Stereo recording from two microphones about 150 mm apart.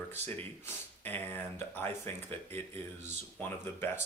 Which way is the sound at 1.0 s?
10° left (ahead or behind).